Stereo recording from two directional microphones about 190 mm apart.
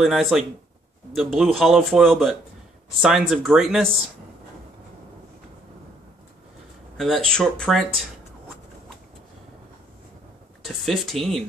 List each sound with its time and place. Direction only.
0.0 s speech: centre (ahead or behind)
7.2 s speech: 5° left (ahead or behind)
10.6 s speech: centre (ahead or behind)